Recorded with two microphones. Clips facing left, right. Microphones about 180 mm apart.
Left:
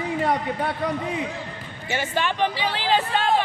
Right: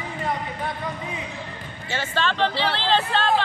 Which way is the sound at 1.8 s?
15° left (ahead or behind).